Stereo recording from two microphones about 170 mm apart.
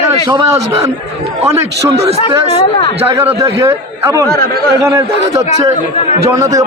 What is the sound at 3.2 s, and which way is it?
A man's voice, 15° right (ahead or behind).